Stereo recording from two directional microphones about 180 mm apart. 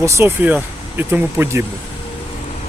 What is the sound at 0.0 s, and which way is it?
Speech, 10° right (ahead or behind).